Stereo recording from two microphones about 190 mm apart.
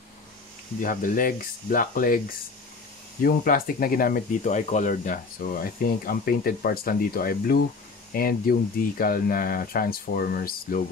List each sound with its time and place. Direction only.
0.7 s speech: 45° left (ahead or behind)